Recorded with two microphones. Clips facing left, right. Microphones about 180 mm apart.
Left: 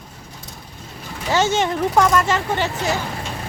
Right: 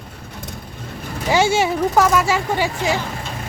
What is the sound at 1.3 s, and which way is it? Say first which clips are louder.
Speech: right 2 dB; 10° right (ahead or behind).